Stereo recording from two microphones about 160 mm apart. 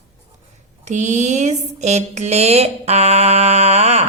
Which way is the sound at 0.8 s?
45° right (ahead or behind).